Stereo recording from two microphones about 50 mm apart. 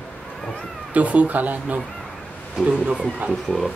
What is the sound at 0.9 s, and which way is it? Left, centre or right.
Speech, right.